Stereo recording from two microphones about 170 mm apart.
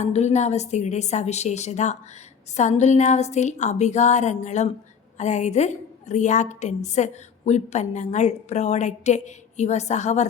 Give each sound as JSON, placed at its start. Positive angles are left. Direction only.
{"t": 0.0, "sound": "a woman's voice", "side_deg": 40}